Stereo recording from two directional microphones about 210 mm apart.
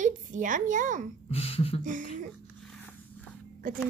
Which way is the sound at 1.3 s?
30° left (ahead or behind).